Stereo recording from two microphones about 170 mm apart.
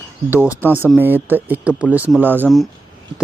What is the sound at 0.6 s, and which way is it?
Speech, 10° right (ahead or behind).